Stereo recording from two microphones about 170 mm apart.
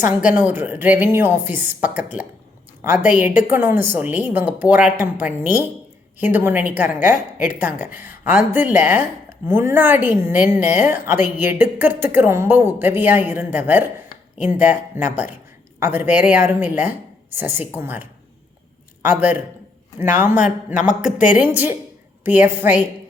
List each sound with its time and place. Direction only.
0.3 s a woman's voice: 10° right (ahead or behind)
20.7 s speech: 50° left (ahead or behind)
21.3 s a woman's voice: 10° right (ahead or behind)